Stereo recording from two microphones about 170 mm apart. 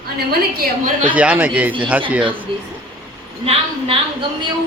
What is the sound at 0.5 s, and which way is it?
Speech, 50° right (ahead or behind).